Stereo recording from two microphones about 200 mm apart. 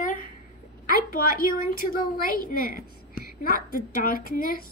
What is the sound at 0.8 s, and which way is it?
A woman's voice, 45° left (ahead or behind).